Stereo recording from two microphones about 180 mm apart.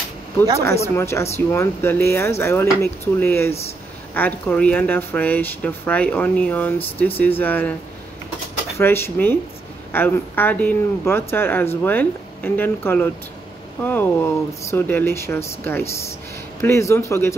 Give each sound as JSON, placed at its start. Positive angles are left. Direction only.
{"t": 0.9, "sound": "speech", "side_deg": 15}
{"t": 8.7, "sound": "speech", "side_deg": 15}